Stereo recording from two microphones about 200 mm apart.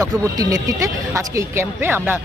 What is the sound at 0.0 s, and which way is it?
Speech, 15° right (ahead or behind).